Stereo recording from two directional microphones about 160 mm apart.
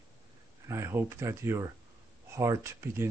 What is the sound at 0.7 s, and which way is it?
Speech, 15° right (ahead or behind).